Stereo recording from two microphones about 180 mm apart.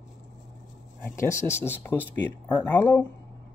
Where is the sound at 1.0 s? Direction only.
15° left (ahead or behind).